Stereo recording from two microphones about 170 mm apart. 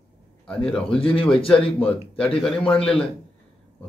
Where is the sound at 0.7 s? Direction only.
30° left (ahead or behind).